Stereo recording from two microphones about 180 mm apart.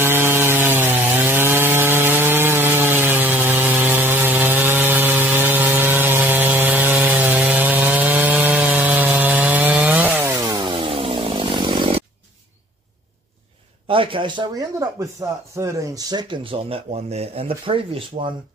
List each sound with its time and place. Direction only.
0.0 s sawing: 10° right (ahead or behind)
10.7 s chainsaw: 30° right (ahead or behind)
13.8 s speech: 30° right (ahead or behind)